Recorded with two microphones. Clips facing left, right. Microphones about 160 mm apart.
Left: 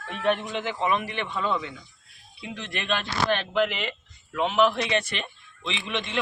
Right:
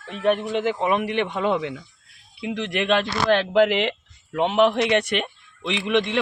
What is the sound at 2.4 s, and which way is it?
Speech, 85° right.